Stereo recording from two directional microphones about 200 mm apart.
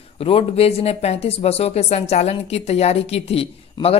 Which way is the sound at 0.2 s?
30° left (ahead or behind).